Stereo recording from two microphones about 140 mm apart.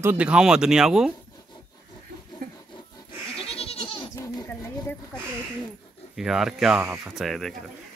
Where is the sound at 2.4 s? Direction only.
80° right.